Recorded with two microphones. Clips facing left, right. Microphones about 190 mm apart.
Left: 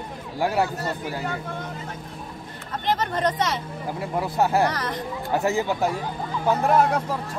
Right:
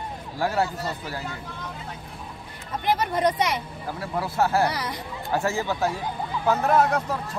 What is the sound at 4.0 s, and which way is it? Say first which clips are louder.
Speech: left 1 dB; 15° left (ahead or behind).